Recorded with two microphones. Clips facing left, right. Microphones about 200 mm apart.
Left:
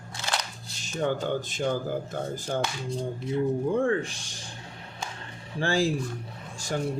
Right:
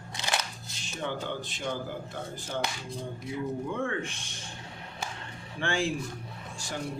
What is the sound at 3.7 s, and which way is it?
Speech, 35° left (ahead or behind).